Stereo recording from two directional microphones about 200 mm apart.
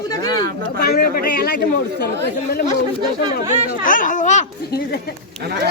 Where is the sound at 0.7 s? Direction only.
50° left (ahead or behind).